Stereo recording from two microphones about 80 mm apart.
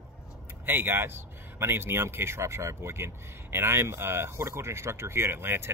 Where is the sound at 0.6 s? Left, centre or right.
Right.